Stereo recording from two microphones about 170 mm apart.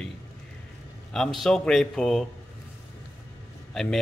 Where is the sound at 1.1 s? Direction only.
Centre (ahead or behind).